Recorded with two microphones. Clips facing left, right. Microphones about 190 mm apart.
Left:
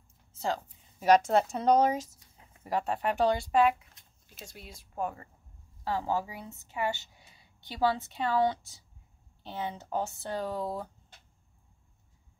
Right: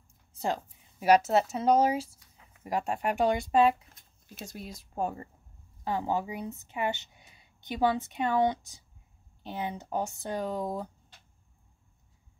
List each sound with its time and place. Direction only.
0.3 s a woman's voice: 15° right (ahead or behind)
4.5 s speech: 40° right (ahead or behind)
5.9 s a woman's voice: 20° right (ahead or behind)